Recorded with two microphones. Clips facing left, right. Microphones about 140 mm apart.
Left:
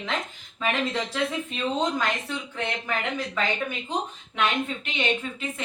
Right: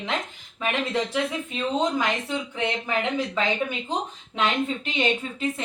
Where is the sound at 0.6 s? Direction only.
15° right (ahead or behind).